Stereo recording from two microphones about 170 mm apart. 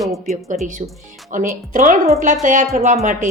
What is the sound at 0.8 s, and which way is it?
Speech, 40° right (ahead or behind).